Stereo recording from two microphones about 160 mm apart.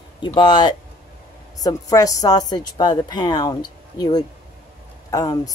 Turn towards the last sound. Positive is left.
turn(degrees=20)  # may be behind; listen again after turning